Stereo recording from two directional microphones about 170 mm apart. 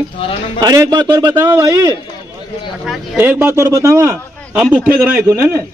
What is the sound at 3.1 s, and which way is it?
Speech, 10° right (ahead or behind).